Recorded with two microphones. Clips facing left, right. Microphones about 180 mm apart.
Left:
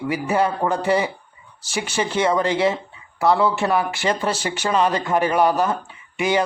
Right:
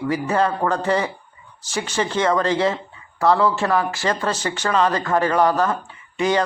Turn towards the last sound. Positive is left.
turn(degrees=10)  # may be behind; listen again after turning